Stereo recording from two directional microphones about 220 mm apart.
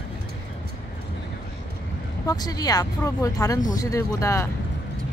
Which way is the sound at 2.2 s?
15° left (ahead or behind).